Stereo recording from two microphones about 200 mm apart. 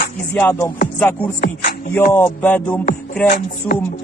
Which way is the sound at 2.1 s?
10° left (ahead or behind).